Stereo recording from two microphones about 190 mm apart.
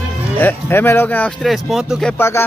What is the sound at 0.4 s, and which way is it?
Speech, 10° left (ahead or behind).